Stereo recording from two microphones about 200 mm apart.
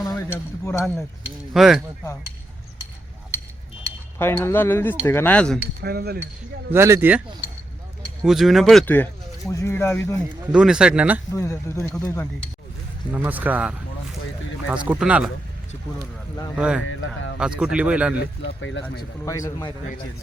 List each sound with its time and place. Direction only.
0.2 s a sound: 10° left (ahead or behind)
0.8 s speech: centre (ahead or behind)
4.2 s speech: 10° left (ahead or behind)
5.8 s speech: 50° right (ahead or behind)
6.7 s speech: 15° right (ahead or behind)
8.0 s speech: centre (ahead or behind)
10.4 s speech: 5° right (ahead or behind)
11.3 s speech: 15° left (ahead or behind)
13.1 s speech: 10° right (ahead or behind)
16.6 s speech: 5° right (ahead or behind)
16.8 s speech: 80° left
17.4 s speech: 5° right (ahead or behind)
18.2 s speech: 60° left (ahead or behind)
19.2 s speech: 15° left (ahead or behind)